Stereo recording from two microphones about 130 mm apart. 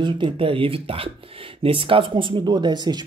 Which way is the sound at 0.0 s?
40° right (ahead or behind).